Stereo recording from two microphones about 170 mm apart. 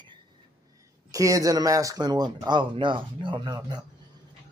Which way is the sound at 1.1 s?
20° right (ahead or behind).